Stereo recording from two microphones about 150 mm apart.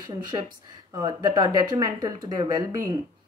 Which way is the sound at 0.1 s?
30° right (ahead or behind).